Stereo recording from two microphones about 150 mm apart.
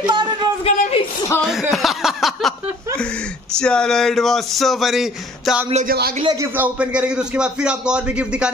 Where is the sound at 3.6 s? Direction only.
5° left (ahead or behind).